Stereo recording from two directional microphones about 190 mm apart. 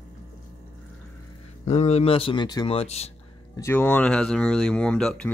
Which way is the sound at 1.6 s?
35° left (ahead or behind).